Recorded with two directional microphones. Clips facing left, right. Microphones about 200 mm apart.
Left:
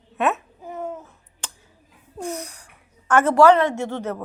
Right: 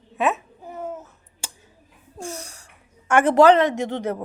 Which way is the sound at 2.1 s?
30° right (ahead or behind).